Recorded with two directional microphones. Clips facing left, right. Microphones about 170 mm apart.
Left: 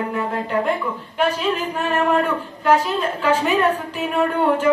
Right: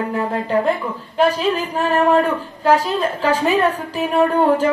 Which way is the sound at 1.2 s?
35° right (ahead or behind).